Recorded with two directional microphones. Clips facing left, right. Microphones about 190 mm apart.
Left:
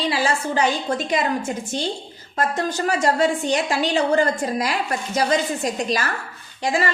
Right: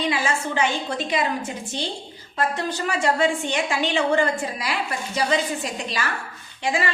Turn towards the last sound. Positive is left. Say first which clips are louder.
# left 2 dB
turn(degrees=40)  # may be behind; listen again after turning